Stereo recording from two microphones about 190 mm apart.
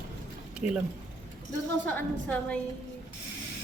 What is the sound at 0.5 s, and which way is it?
Speech, 5° right (ahead or behind).